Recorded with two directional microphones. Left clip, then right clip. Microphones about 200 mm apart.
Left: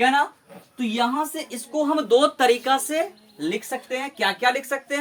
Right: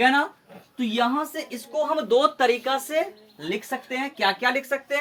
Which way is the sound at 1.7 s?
25° left (ahead or behind).